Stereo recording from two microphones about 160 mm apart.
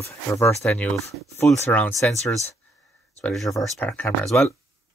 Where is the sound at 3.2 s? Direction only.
Centre (ahead or behind).